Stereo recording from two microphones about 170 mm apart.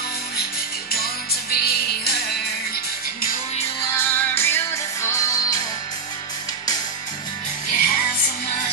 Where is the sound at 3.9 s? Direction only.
15° left (ahead or behind).